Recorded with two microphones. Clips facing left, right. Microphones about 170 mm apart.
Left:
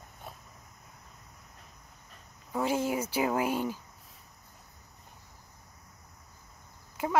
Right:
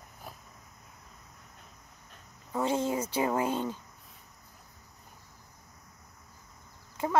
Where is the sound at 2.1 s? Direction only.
5° left (ahead or behind).